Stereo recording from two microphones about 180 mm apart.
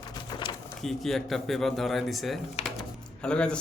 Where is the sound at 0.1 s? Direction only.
25° left (ahead or behind).